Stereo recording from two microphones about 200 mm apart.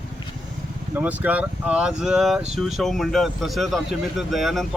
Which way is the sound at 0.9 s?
10° right (ahead or behind).